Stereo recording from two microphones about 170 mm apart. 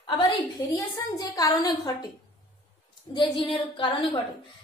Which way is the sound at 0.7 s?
20° left (ahead or behind).